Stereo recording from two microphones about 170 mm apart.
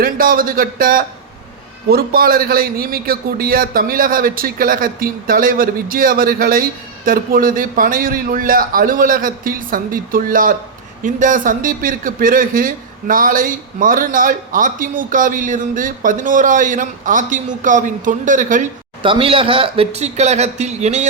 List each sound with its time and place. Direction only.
0.0 s a man's voice: 55° right (ahead or behind)
19.0 s a man's voice: 30° right (ahead or behind)